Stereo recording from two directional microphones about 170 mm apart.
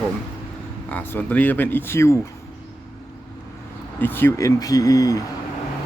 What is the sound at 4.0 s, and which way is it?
Speech, 10° left (ahead or behind).